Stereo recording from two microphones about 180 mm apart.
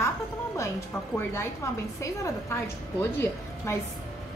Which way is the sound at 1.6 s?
15° left (ahead or behind).